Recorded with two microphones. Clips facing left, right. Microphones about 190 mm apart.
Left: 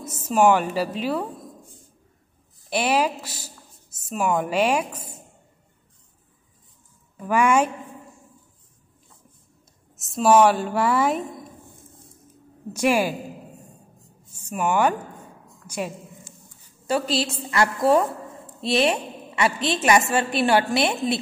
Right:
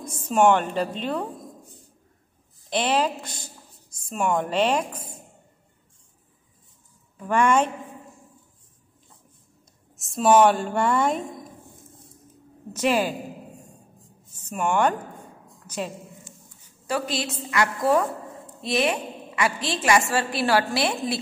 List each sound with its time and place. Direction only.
0.0 s speech: 5° left (ahead or behind)
2.7 s speech: 10° left (ahead or behind)
7.2 s speech: 10° left (ahead or behind)
9.9 s speech: centre (ahead or behind)
12.7 s speech: 10° left (ahead or behind)
14.4 s a woman's voice: 5° left (ahead or behind)
15.6 s a sound: 10° left (ahead or behind)
16.8 s a woman's voice: 25° left (ahead or behind)